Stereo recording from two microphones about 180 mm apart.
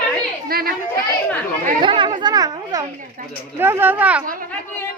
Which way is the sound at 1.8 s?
25° right (ahead or behind).